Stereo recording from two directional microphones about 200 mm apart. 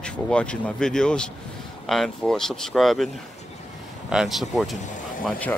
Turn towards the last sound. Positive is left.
turn(degrees=10)  # may be behind; listen again after turning